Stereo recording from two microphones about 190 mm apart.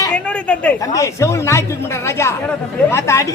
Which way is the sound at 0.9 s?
15° left (ahead or behind).